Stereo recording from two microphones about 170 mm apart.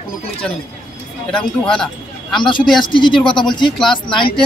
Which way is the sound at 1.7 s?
5° left (ahead or behind).